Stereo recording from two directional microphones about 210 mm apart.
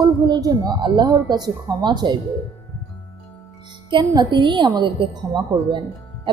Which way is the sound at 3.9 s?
20° right (ahead or behind).